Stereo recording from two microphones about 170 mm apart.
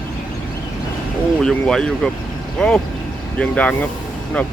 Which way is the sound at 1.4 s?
5° left (ahead or behind).